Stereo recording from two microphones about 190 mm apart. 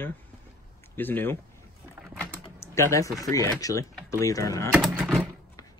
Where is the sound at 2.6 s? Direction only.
15° left (ahead or behind).